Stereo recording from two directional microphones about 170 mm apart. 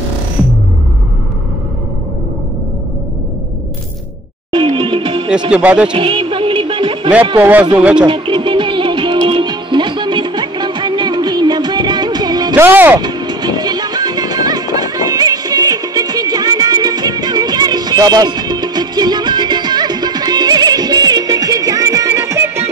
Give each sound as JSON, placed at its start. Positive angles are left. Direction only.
{"t": 4.5, "sound": "music", "side_deg": -30}
{"t": 5.5, "sound": "speech", "side_deg": -5}
{"t": 5.9, "sound": "music", "side_deg": -30}
{"t": 7.3, "sound": "speech", "side_deg": -10}
{"t": 8.0, "sound": "music", "side_deg": -30}
{"t": 12.6, "sound": "speech", "side_deg": -10}
{"t": 13.0, "sound": "music", "side_deg": -25}